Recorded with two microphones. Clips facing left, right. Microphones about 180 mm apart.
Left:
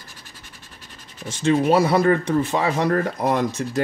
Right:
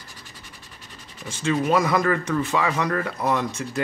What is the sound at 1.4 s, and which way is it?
Speech, 35° left (ahead or behind).